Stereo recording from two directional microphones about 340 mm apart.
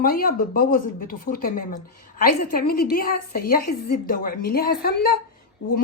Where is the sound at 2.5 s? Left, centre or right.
Left.